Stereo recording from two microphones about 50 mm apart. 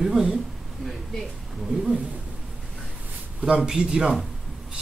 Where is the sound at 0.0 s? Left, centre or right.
Centre.